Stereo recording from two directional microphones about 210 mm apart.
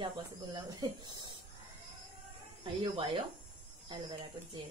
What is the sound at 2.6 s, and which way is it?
Speech, 25° right (ahead or behind).